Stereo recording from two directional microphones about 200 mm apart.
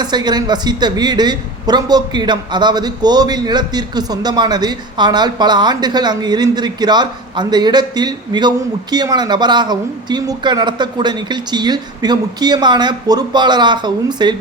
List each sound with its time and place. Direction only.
0.0 s a man's voice: 20° right (ahead or behind)